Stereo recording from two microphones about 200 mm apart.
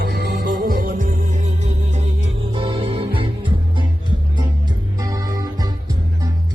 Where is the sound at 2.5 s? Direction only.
25° right (ahead or behind).